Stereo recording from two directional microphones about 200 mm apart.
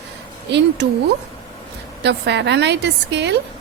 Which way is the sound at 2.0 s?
60° right (ahead or behind).